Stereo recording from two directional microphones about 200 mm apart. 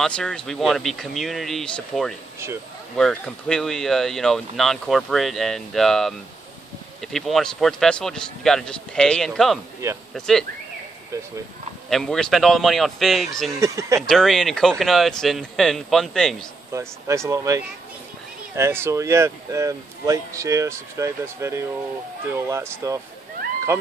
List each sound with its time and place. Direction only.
0.0 s speech: 5° left (ahead or behind)
11.9 s speech: centre (ahead or behind)
13.6 s speech: 15° right (ahead or behind)
14.0 s speech: centre (ahead or behind)
16.7 s speech: 15° right (ahead or behind)